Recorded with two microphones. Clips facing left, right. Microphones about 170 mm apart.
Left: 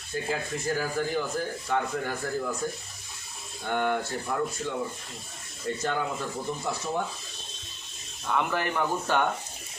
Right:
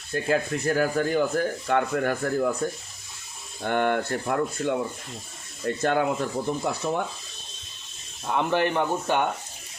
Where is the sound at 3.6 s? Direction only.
60° right (ahead or behind).